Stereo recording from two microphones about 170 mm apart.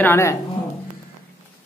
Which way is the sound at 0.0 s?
15° left (ahead or behind).